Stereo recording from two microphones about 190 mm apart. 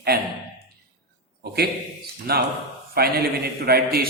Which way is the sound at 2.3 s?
55° right (ahead or behind).